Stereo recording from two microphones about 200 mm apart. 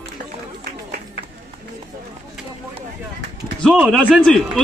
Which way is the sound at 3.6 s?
Centre (ahead or behind).